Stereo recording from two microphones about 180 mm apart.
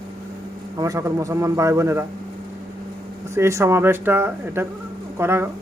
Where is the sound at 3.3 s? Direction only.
15° right (ahead or behind).